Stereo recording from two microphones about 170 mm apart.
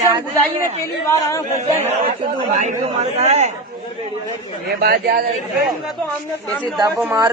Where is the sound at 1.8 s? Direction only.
35° right (ahead or behind).